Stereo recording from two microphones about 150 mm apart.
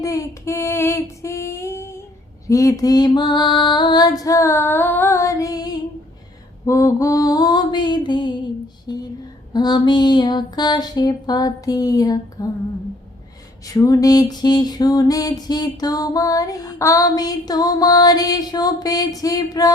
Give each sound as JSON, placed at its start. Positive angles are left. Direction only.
{"t": 0.0, "sound": "female singing", "side_deg": 20}
{"t": 2.5, "sound": "music", "side_deg": 20}
{"t": 13.7, "sound": "music", "side_deg": 20}